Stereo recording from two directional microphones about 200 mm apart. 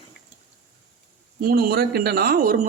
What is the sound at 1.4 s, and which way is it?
A man's voice, 50° right (ahead or behind).